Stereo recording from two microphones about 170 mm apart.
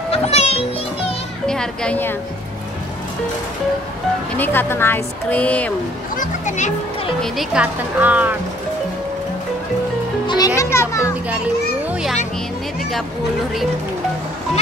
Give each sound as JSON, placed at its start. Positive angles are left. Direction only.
{"t": 0.1, "sound": "a child's voice", "side_deg": 35}
{"t": 1.5, "sound": "a child's voice", "side_deg": 5}
{"t": 4.4, "sound": "speech", "side_deg": 15}
{"t": 6.1, "sound": "speech", "side_deg": 45}
{"t": 7.2, "sound": "speech", "side_deg": -5}
{"t": 10.2, "sound": "children playing", "side_deg": 25}
{"t": 11.9, "sound": "children playing", "side_deg": -5}